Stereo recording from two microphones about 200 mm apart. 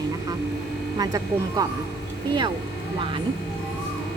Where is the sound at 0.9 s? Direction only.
20° right (ahead or behind).